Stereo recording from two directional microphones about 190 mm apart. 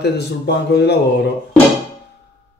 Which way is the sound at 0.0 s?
60° left (ahead or behind).